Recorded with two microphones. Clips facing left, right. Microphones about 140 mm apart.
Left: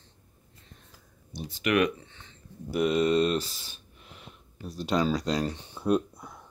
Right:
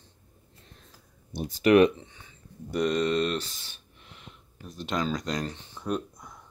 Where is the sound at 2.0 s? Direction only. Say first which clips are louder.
Right 1 dB; 10° right (ahead or behind).